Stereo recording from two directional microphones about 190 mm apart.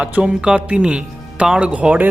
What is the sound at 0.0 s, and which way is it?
Speech, 5° right (ahead or behind).